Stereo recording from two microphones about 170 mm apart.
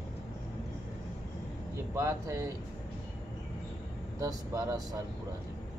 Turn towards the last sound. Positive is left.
turn(degrees=-20)  # may be behind; listen again after turning